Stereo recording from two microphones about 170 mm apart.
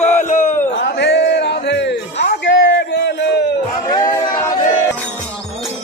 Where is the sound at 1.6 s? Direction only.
90° left.